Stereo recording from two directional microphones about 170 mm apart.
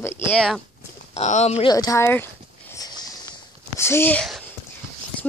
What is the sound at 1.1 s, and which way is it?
Speech, 40° left (ahead or behind).